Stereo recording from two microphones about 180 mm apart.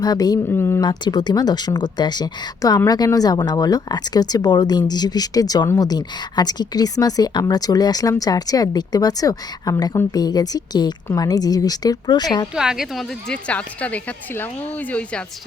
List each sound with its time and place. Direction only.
0.0 s speech: 20° left (ahead or behind)
0.9 s speech: 25° left (ahead or behind)
12.5 s a woman's voice: 5° right (ahead or behind)